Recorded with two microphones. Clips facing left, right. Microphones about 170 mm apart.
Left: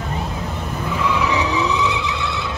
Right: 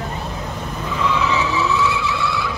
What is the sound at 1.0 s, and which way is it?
Vehicle, 15° left (ahead or behind).